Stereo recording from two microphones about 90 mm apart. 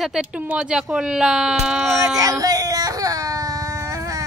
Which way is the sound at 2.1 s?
40° right (ahead or behind).